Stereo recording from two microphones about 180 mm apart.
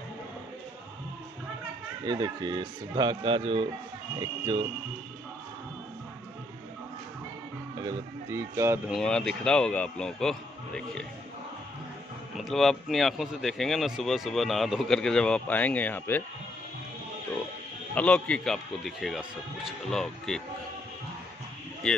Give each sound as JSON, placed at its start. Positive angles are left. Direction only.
{"t": 2.0, "sound": "speech", "side_deg": -25}
{"t": 7.7, "sound": "speech", "side_deg": -20}
{"t": 8.9, "sound": "speech", "side_deg": 5}
{"t": 12.4, "sound": "speech", "side_deg": 0}
{"t": 17.9, "sound": "speech", "side_deg": 5}
{"t": 21.8, "sound": "speech", "side_deg": 5}